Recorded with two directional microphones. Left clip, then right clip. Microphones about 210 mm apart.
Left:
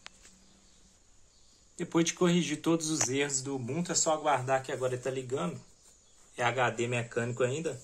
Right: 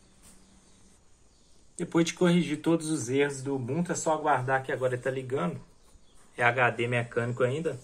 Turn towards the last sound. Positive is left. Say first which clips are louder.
# right 3 dB
turn(degrees=15)  # may be behind; listen again after turning